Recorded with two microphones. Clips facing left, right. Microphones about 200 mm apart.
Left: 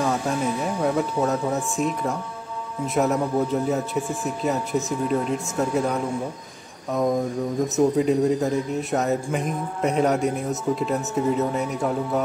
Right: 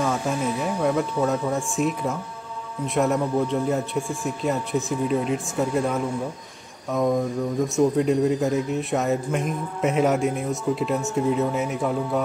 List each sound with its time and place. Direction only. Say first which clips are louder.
0.0 s music: left 1 dB; centre (ahead or behind)
0.8 s a man's voice: even; centre (ahead or behind)